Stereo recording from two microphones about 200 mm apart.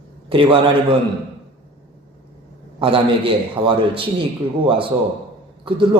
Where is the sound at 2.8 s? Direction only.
25° right (ahead or behind).